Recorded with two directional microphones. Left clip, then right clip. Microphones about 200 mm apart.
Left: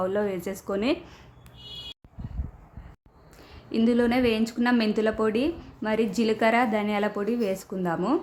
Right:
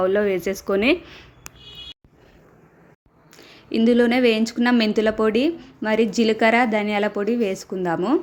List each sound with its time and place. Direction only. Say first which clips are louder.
0.0 s a woman's voice: right 7 dB; 20° right (ahead or behind)
3.3 s a woman's voice: right 5 dB; 20° right (ahead or behind)